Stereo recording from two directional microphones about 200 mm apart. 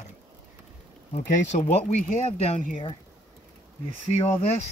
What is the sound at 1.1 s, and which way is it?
Speech, 35° left (ahead or behind).